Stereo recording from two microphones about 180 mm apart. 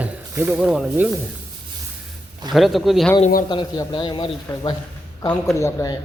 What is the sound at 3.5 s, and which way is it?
A man's voice, 25° left (ahead or behind).